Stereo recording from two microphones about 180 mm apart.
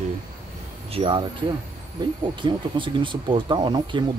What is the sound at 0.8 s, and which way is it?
Speech, 30° right (ahead or behind).